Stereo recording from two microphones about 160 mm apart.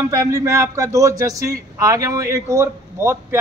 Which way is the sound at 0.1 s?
20° right (ahead or behind).